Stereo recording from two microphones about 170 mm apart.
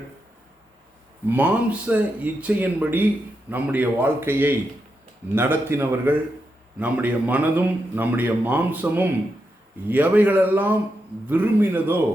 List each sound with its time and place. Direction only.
1.3 s a man's voice: 10° right (ahead or behind)